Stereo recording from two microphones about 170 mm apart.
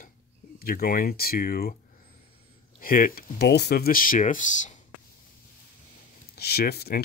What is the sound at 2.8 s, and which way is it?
Speech, 55° left (ahead or behind).